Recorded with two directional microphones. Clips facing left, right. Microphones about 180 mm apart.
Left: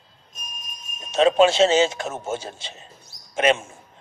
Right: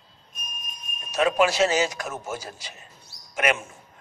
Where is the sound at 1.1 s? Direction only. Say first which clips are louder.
Left 5 dB; 25° left (ahead or behind).